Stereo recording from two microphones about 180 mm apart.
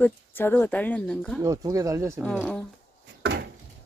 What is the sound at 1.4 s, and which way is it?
Speech, 20° right (ahead or behind).